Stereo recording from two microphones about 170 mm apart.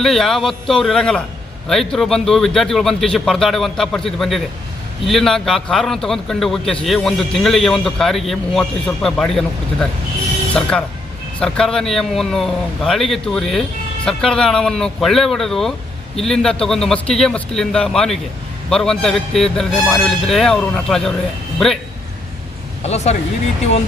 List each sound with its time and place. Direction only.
0.0 s a man's voice: centre (ahead or behind)
10.5 s a man's voice: 5° left (ahead or behind)
22.8 s speech: 40° left (ahead or behind)